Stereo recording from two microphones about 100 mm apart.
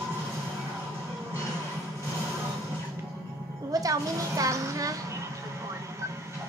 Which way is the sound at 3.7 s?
35° right (ahead or behind).